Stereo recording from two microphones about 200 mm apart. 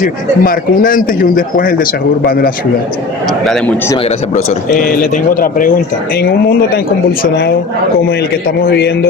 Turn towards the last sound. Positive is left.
turn(degrees=55)  # may be behind; listen again after turning